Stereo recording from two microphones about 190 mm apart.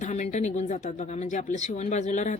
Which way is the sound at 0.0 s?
40° left (ahead or behind).